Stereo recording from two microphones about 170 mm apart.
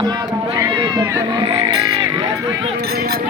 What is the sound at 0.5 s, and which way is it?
Speech, 25° right (ahead or behind).